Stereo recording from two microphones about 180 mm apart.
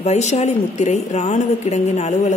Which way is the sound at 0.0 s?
40° left (ahead or behind).